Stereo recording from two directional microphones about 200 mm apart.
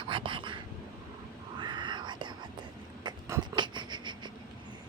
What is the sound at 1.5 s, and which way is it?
Whispering, 25° right (ahead or behind).